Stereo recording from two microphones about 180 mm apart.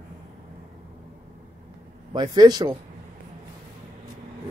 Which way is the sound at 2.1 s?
20° right (ahead or behind).